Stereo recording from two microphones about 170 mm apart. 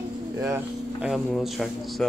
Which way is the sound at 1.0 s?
Centre (ahead or behind).